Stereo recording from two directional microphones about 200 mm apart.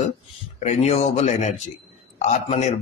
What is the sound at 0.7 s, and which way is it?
A man's voice, 35° left (ahead or behind).